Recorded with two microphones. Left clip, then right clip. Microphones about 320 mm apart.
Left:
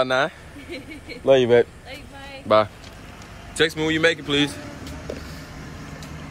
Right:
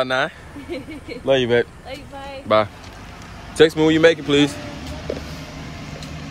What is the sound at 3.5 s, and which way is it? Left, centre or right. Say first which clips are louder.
Speech: right 7 dB; centre.